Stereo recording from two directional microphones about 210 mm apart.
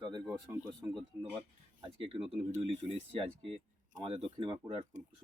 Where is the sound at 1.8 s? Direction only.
25° right (ahead or behind).